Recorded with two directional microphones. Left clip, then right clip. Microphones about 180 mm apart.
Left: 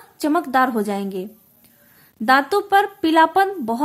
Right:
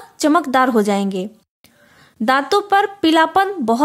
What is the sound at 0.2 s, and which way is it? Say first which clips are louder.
Speech: right 3 dB; 30° right (ahead or behind).